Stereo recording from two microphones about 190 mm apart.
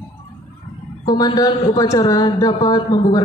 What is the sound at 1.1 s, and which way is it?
A woman's voice, 20° left (ahead or behind).